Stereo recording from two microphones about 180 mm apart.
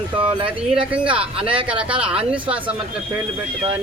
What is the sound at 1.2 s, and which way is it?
Speech, 30° right (ahead or behind).